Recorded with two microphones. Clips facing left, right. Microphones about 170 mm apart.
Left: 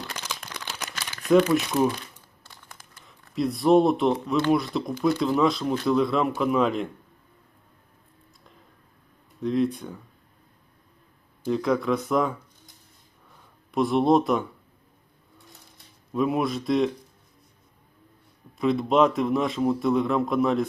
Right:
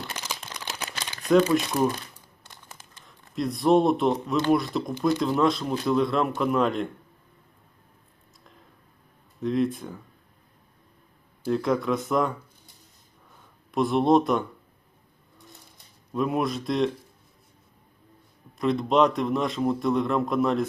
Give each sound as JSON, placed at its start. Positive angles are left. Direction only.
{"t": 0.2, "sound": "a sound", "side_deg": -10}
{"t": 0.9, "sound": "crumpling", "side_deg": -20}
{"t": 1.3, "sound": "speech", "side_deg": 5}
{"t": 2.4, "sound": "crumpling", "side_deg": -20}
{"t": 3.1, "sound": "a man's voice", "side_deg": 0}
{"t": 9.4, "sound": "a man's voice", "side_deg": 0}
{"t": 11.4, "sound": "a man's voice", "side_deg": 0}
{"t": 13.7, "sound": "a man's voice", "side_deg": 0}
{"t": 16.1, "sound": "a man's voice", "side_deg": 0}
{"t": 18.5, "sound": "a man's voice", "side_deg": 0}